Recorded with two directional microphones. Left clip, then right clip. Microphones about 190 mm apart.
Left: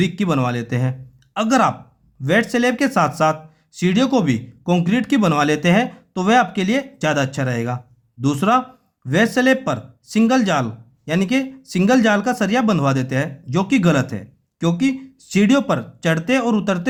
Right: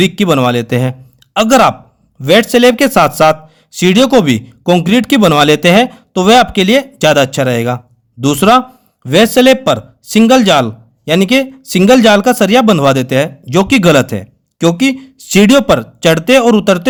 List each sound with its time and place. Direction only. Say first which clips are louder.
0.0 s speech: right 10 dB; 45° right (ahead or behind)